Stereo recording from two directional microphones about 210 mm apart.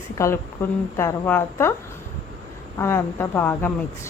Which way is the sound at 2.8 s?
10° left (ahead or behind).